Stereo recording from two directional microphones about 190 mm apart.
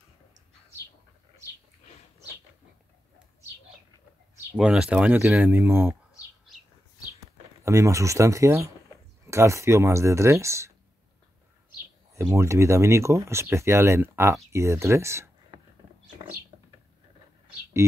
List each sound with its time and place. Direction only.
4.6 s speech: 5° right (ahead or behind)
7.6 s speech: 15° right (ahead or behind)
12.1 s speech: 15° right (ahead or behind)